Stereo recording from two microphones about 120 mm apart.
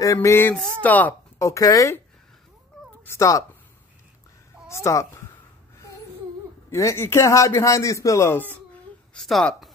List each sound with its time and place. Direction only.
0.0 s a man's voice: 25° left (ahead or behind)
1.4 s a man's voice: 30° left (ahead or behind)
2.8 s cat: centre (ahead or behind)
3.1 s a man's voice: 25° left (ahead or behind)
4.6 s speech: 25° left (ahead or behind)
6.7 s a man's voice: 25° left (ahead or behind)
9.1 s a woman's voice: 5° left (ahead or behind)